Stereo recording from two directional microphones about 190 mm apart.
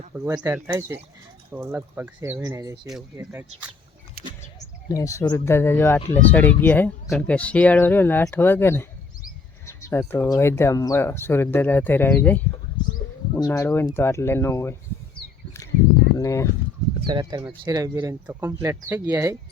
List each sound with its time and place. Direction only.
0.4 s speech: 15° right (ahead or behind)
2.8 s speech: centre (ahead or behind)
4.9 s speech: 15° left (ahead or behind)
16.1 s speech: 15° left (ahead or behind)
17.1 s speech: 25° right (ahead or behind)